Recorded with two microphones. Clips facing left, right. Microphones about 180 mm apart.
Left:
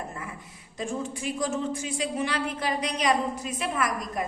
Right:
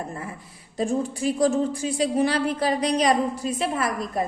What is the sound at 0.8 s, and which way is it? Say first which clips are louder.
A woman's voice: right 7 dB; 35° right (ahead or behind).